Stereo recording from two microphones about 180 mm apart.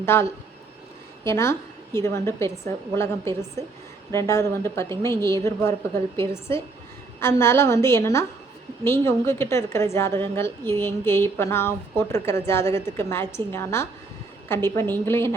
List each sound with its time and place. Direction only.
0.0 s a woman's voice: 15° left (ahead or behind)